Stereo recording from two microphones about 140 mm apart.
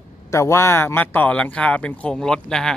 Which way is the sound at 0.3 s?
20° left (ahead or behind).